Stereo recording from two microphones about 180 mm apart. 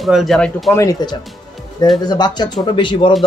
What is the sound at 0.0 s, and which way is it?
Speech, centre (ahead or behind).